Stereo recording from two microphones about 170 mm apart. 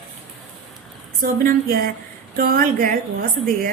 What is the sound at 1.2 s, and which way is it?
A woman's voice, 55° right (ahead or behind).